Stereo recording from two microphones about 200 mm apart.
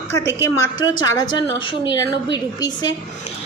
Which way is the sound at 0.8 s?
20° left (ahead or behind).